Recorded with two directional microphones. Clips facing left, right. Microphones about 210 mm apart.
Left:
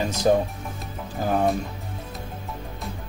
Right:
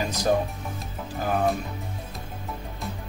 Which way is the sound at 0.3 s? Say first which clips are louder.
Left 4 dB; 25° left (ahead or behind).